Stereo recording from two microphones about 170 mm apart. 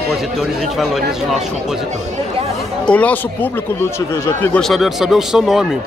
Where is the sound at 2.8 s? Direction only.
10° left (ahead or behind).